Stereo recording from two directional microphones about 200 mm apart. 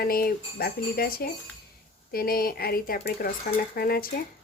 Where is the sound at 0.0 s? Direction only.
50° left (ahead or behind).